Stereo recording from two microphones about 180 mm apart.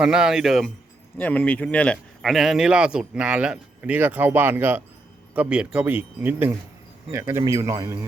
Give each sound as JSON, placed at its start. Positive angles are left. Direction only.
{"t": 0.0, "sound": "speech", "side_deg": -5}
{"t": 1.2, "sound": "speech", "side_deg": 10}